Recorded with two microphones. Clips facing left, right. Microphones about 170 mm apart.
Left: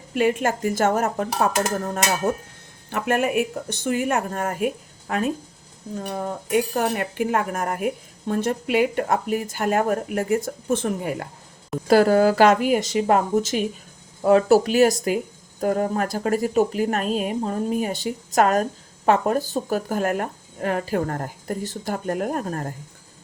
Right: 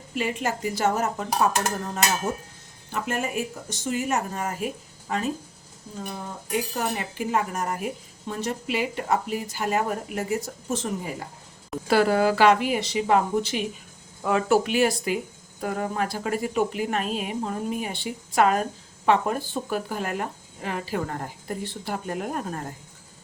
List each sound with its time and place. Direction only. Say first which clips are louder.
0.2 s speech: left 6 dB; 55° left (ahead or behind)
2.9 s speech: left 6 dB; 65° left (ahead or behind)
6.5 s speech: left 5 dB; 55° left (ahead or behind)
11.9 s speech: left 5 dB; 40° left (ahead or behind)